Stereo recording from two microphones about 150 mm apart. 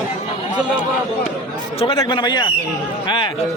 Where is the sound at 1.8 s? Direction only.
35° left (ahead or behind).